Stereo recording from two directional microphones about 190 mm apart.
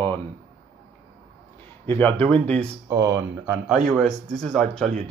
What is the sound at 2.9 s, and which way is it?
Speech, 15° right (ahead or behind).